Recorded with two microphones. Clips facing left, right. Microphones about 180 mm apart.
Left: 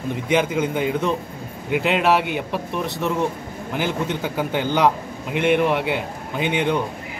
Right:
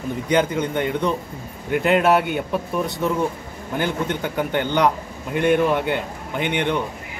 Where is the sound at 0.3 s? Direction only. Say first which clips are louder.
Even; 5° left (ahead or behind).